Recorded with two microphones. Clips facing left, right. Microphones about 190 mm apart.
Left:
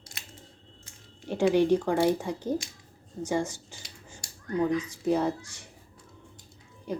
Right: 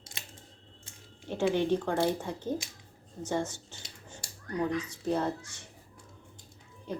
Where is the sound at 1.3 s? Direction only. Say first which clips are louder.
Left 5 dB; 10° left (ahead or behind).